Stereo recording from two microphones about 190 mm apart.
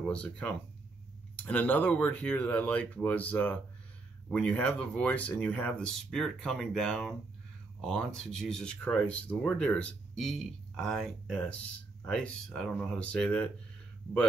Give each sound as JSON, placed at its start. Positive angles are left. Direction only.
{"t": 0.1, "sound": "speech", "side_deg": 5}